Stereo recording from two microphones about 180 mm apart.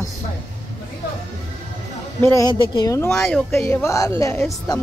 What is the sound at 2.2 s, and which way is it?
A woman's voice, 20° left (ahead or behind).